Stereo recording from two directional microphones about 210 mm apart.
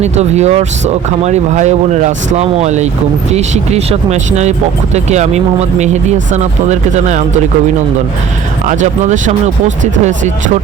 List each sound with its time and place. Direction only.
0.0 s speech: 30° right (ahead or behind)
8.6 s speech: 35° right (ahead or behind)